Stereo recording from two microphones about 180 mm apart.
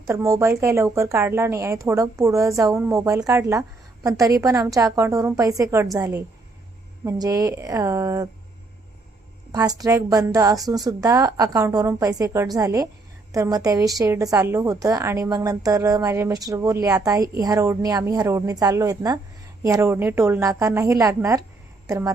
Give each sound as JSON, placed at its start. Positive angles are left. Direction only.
{"t": 0.1, "sound": "speech", "side_deg": -15}
{"t": 9.5, "sound": "a woman's voice", "side_deg": -20}